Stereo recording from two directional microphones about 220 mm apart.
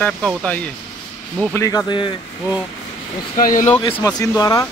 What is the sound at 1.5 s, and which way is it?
Speech, 15° left (ahead or behind).